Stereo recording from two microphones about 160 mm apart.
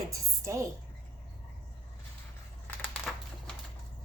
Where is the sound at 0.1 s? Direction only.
20° right (ahead or behind).